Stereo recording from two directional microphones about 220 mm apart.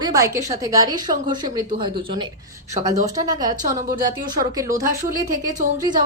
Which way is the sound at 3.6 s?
35° right (ahead or behind).